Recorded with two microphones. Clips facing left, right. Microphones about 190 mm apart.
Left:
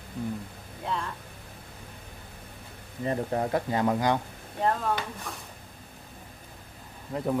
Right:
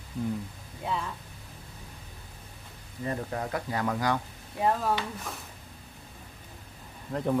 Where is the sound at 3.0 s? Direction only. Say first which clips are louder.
Left 4 dB; 30° left (ahead or behind).